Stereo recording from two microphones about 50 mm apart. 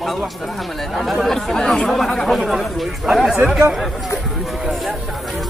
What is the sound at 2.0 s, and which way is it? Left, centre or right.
Speech, centre.